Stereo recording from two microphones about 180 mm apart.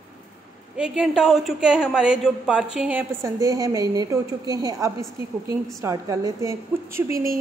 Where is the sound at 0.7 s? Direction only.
5° right (ahead or behind).